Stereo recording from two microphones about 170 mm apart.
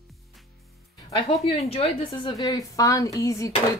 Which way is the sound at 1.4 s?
35° left (ahead or behind).